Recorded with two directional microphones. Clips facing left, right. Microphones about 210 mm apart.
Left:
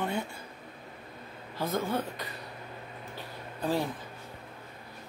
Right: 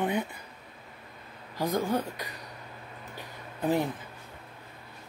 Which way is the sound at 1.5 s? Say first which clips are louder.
Right 3 dB; 15° right (ahead or behind).